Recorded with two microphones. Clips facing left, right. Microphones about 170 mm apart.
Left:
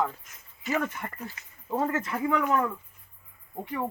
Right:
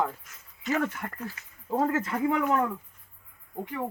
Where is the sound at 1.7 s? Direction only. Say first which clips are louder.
Right 2 dB; 10° right (ahead or behind).